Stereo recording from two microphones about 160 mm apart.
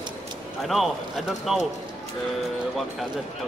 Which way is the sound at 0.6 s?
Centre (ahead or behind).